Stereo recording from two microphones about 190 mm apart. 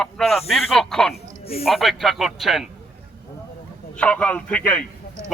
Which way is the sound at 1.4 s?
30° left (ahead or behind).